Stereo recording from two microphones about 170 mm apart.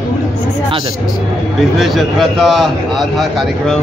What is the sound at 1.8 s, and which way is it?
Speech, centre (ahead or behind).